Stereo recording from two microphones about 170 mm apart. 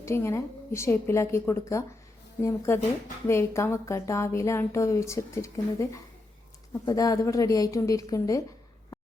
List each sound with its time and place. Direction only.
0.0 s a woman's voice: 15° left (ahead or behind)